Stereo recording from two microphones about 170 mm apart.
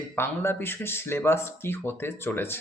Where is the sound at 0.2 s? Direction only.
15° left (ahead or behind).